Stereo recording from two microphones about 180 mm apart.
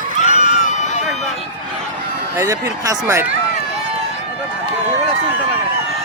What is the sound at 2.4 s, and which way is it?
Speech, 20° right (ahead or behind).